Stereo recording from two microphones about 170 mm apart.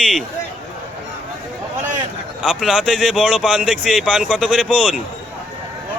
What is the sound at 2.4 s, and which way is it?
A man's voice, 5° right (ahead or behind).